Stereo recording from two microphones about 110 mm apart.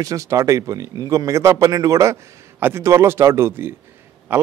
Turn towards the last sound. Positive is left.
turn(degrees=-15)  # may be behind; listen again after turning